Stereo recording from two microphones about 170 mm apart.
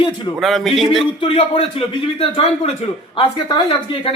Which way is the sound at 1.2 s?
30° left (ahead or behind).